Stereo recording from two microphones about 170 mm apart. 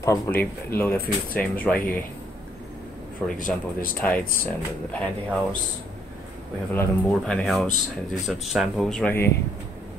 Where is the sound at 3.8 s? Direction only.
55° left (ahead or behind).